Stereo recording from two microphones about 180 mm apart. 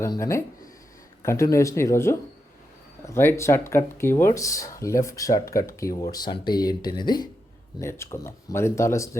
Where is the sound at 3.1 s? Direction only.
15° left (ahead or behind).